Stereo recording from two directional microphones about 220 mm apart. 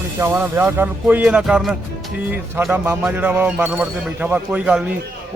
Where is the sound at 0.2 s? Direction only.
10° right (ahead or behind).